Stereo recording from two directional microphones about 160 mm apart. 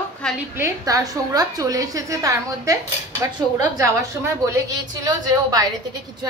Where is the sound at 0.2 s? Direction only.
5° left (ahead or behind).